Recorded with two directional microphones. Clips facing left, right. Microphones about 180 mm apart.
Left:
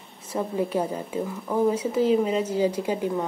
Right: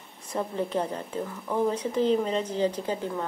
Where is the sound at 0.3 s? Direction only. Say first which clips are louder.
Left 3 dB; 10° left (ahead or behind).